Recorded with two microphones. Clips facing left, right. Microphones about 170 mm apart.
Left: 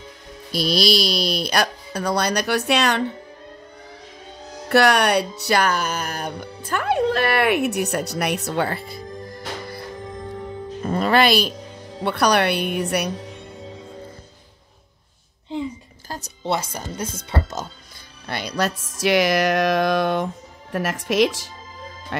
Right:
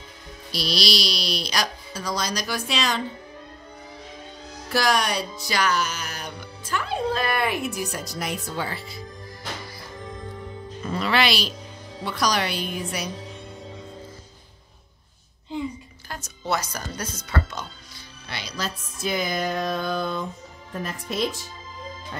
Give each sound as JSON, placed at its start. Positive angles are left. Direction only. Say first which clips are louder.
{"t": 0.5, "sound": "speech", "louder": "left 6 dB", "side_deg": 50}
{"t": 4.6, "sound": "music", "louder": "left 6 dB", "side_deg": 65}
{"t": 10.8, "sound": "speech", "louder": "left 5 dB", "side_deg": 50}
{"t": 16.1, "sound": "speech", "louder": "left 3 dB", "side_deg": 30}
{"t": 18.3, "sound": "speech", "louder": "left 8 dB", "side_deg": 60}